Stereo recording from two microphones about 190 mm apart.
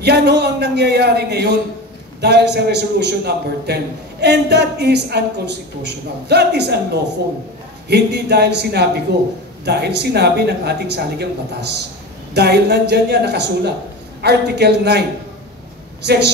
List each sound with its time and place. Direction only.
0.0 s a man's voice: 60° right (ahead or behind)